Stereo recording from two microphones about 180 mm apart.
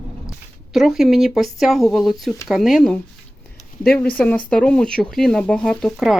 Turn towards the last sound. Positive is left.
turn(degrees=0)  # may be behind; listen again after turning